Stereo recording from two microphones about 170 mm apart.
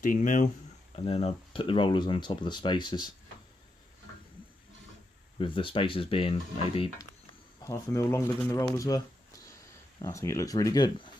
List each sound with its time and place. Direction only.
0.0 s speech: 50° left (ahead or behind)
0.9 s speech: 40° left (ahead or behind)
5.4 s speech: 30° left (ahead or behind)
7.6 s speech: 20° left (ahead or behind)
10.0 s speech: 20° left (ahead or behind)